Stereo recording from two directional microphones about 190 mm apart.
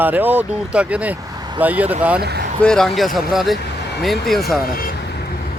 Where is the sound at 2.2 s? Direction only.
60° right (ahead or behind).